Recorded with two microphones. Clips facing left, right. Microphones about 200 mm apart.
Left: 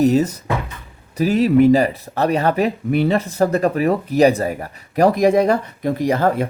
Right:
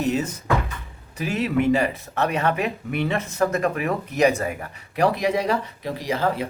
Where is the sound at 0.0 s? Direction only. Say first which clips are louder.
Left 8 dB; 40° left (ahead or behind).